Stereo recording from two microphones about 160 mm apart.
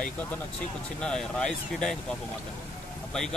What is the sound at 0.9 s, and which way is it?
Speech, 5° left (ahead or behind).